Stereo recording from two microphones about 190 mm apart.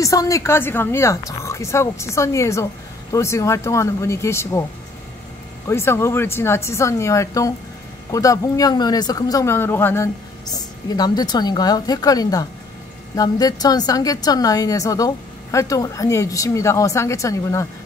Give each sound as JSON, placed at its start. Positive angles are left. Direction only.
{"t": 0.0, "sound": "a woman's voice", "side_deg": 15}
{"t": 5.7, "sound": "a woman's voice", "side_deg": 15}